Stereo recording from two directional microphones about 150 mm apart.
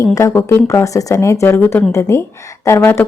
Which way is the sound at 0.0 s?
20° left (ahead or behind).